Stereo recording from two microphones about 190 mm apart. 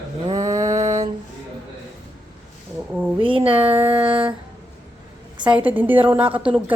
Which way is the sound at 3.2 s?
30° right (ahead or behind).